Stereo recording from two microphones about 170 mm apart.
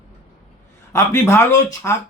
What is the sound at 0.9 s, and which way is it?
A man's voice, 15° left (ahead or behind).